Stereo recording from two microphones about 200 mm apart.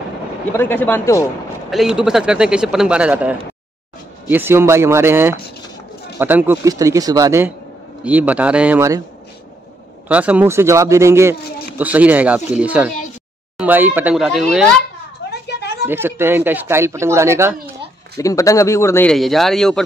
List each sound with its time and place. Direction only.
0.6 s speech: 10° left (ahead or behind)
1.7 s speech: centre (ahead or behind)
10.0 s speech: 5° right (ahead or behind)
11.3 s a sound: 50° left (ahead or behind)
11.8 s speech: 5° right (ahead or behind)
15.9 s speech: 10° right (ahead or behind)
18.1 s speech: 15° left (ahead or behind)
19.1 s speech: centre (ahead or behind)